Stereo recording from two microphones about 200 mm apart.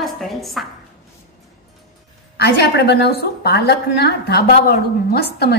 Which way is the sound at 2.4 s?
55° left (ahead or behind).